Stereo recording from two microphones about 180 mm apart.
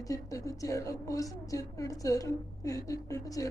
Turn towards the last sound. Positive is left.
turn(degrees=20)  # may be behind; listen again after turning